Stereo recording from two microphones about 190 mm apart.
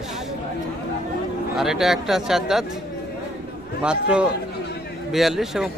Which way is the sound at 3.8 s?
5° right (ahead or behind).